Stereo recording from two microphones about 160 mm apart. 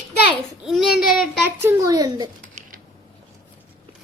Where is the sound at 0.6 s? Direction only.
Centre (ahead or behind).